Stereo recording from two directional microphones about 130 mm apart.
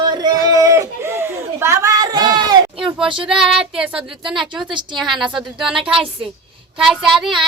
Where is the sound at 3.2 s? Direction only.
5° right (ahead or behind).